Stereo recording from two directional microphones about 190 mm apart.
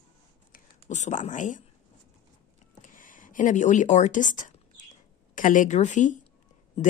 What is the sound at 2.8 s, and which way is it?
A woman's voice, 45° left (ahead or behind).